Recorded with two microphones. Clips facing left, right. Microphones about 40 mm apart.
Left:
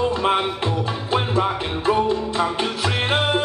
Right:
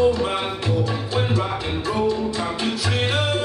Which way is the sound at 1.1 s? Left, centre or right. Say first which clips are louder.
Left 6 dB; left.